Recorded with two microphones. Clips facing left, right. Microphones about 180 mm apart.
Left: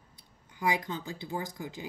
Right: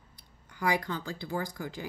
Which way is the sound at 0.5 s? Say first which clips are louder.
Right 1 dB; 20° left (ahead or behind).